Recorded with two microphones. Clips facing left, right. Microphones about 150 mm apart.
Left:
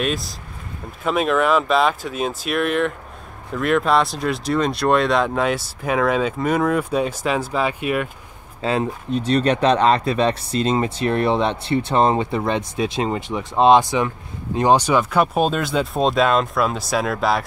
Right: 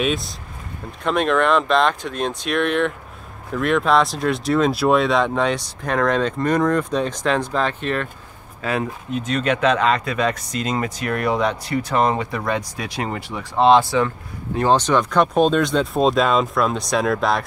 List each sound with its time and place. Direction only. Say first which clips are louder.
0.0 s speech: right 1 dB; centre (ahead or behind)
8.6 s speech: left 2 dB; 30° left (ahead or behind); by 17.4 s centre (ahead or behind)